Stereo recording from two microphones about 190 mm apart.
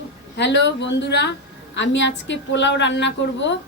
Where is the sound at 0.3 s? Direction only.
65° left (ahead or behind).